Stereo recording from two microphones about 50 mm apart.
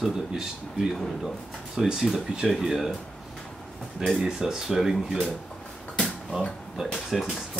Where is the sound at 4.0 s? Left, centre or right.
Centre.